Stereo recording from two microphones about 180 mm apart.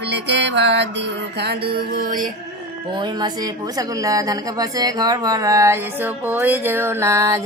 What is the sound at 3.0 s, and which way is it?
Speech, 25° right (ahead or behind).